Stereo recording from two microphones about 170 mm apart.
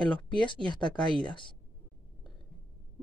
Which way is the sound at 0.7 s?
25° left (ahead or behind).